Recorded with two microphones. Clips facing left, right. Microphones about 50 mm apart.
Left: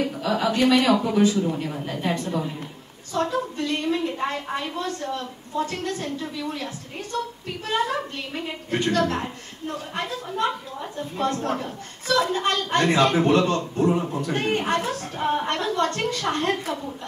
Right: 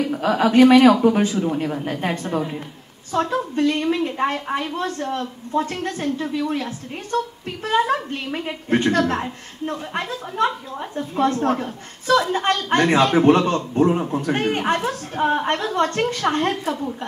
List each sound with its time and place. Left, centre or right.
0.1 s a woman's voice: right
1.3 s a man's voice: right
1.9 s a woman's voice: right